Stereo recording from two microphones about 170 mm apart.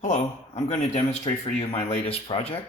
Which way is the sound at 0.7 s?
40° left (ahead or behind).